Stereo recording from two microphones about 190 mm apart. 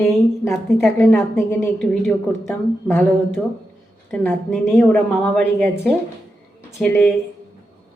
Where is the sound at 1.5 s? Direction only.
10° left (ahead or behind).